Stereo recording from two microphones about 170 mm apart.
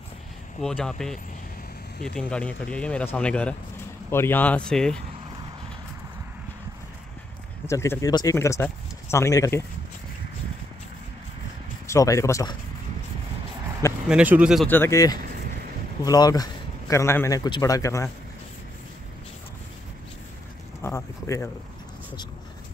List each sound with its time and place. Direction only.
0.6 s speech: 5° left (ahead or behind)
7.6 s speech: 15° left (ahead or behind)
11.9 s a man's voice: 20° left (ahead or behind)
14.0 s speech: 10° right (ahead or behind)
14.7 s a man's voice: 15° left (ahead or behind)
20.8 s speech: 15° left (ahead or behind)